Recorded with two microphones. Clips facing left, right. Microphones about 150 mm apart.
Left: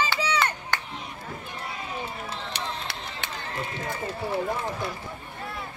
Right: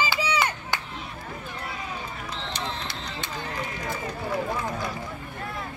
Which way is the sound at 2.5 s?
70° left (ahead or behind).